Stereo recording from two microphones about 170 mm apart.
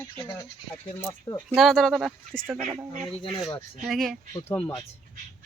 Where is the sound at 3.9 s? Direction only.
Centre (ahead or behind).